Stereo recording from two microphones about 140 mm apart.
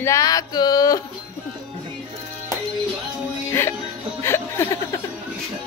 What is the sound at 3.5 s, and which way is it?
Music, 15° left (ahead or behind).